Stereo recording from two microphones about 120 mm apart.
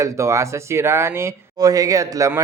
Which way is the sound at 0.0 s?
25° right (ahead or behind).